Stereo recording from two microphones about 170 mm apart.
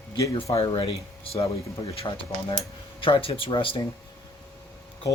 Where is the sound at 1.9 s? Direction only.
30° left (ahead or behind).